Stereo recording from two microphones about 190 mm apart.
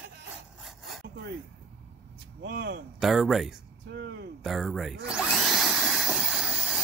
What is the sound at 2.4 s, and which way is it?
Speech, 65° right (ahead or behind).